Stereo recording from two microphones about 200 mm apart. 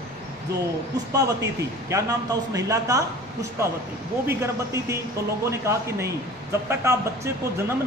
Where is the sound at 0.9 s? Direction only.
15° right (ahead or behind).